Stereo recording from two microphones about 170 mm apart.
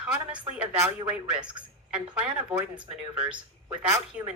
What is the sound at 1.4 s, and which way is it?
Speech, 30° right (ahead or behind).